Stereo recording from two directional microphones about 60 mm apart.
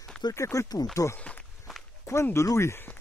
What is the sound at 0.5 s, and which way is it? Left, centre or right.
Speech, left.